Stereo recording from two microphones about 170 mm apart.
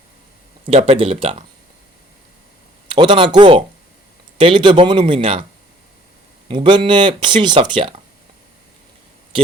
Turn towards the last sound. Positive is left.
turn(degrees=-30)  # may be behind; listen again after turning